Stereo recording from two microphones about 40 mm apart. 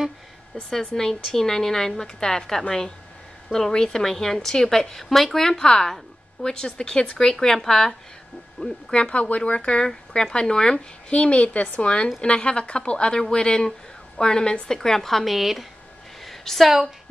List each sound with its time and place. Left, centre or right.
0.7 s a woman's voice: centre
8.6 s a woman's voice: left
9.8 s a woman's voice: centre
16.3 s a sound: centre